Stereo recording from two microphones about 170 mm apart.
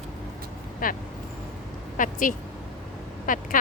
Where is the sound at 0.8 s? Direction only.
55° left (ahead or behind).